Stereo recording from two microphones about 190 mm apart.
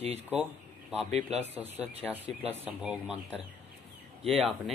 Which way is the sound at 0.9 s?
35° right (ahead or behind).